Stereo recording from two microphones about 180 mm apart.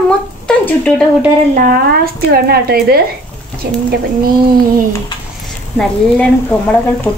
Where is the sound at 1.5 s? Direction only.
55° right (ahead or behind).